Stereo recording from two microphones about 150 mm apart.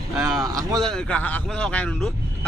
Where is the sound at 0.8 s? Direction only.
5° left (ahead or behind).